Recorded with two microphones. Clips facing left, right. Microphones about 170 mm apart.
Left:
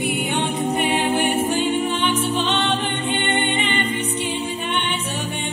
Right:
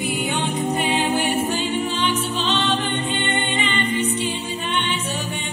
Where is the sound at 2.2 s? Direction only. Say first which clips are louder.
Left 2 dB; 55° left (ahead or behind).